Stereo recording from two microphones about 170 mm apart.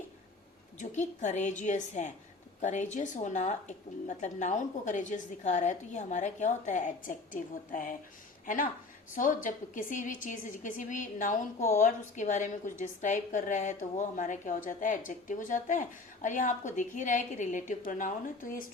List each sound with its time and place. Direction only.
0.8 s a woman's voice: 45° left (ahead or behind)